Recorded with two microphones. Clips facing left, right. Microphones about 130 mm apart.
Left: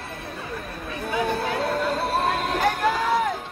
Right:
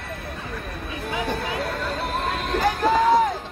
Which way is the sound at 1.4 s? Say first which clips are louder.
Left 3 dB; 30° left (ahead or behind).